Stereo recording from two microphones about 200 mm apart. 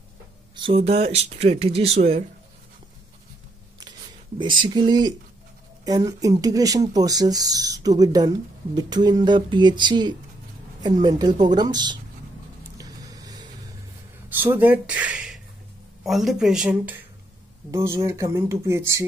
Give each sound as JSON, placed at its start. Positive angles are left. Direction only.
{"t": 0.6, "sound": "speech", "side_deg": -25}
{"t": 4.6, "sound": "speech", "side_deg": -20}
{"t": 12.7, "sound": "vehicle", "side_deg": -20}
{"t": 14.4, "sound": "speech", "side_deg": -10}